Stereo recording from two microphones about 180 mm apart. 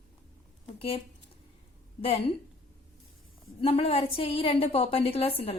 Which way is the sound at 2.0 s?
35° left (ahead or behind).